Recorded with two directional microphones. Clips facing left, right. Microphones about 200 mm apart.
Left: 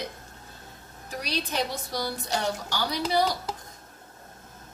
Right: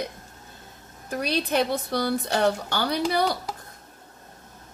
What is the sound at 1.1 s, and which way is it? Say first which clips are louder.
Speech: right 7 dB; 55° right (ahead or behind).